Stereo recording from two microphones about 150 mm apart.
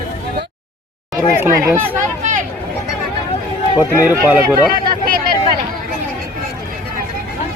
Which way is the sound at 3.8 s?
10° right (ahead or behind).